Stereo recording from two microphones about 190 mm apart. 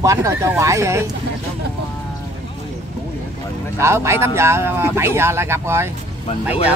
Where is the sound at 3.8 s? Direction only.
15° right (ahead or behind).